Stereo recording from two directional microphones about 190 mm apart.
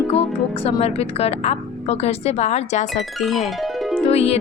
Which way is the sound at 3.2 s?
Centre (ahead or behind).